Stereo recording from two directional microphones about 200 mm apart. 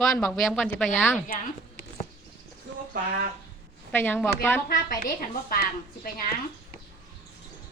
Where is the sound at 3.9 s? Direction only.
10° left (ahead or behind).